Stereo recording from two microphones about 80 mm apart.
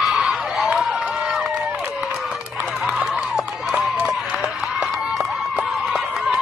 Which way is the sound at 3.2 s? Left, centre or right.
Centre.